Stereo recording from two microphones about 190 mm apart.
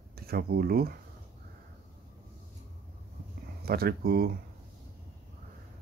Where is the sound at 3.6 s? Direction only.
50° right (ahead or behind).